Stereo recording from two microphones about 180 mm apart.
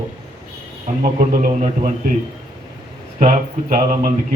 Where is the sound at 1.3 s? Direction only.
45° right (ahead or behind).